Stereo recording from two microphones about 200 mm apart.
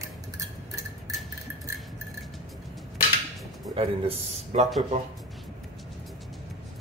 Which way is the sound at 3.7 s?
30° right (ahead or behind).